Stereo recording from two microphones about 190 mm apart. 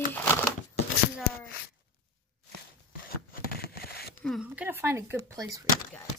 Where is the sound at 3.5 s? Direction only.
55° left (ahead or behind).